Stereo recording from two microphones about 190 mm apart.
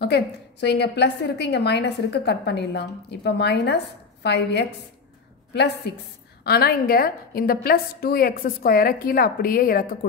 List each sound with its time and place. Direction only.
0.0 s a woman's voice: 60° left (ahead or behind)